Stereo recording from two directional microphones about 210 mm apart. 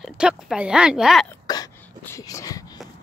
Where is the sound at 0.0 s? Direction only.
5° right (ahead or behind).